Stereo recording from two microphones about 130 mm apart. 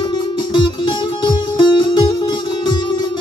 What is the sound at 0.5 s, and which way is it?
Music, 35° left (ahead or behind).